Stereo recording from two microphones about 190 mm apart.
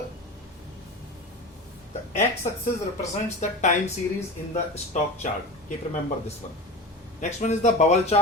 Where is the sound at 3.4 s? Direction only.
40° left (ahead or behind).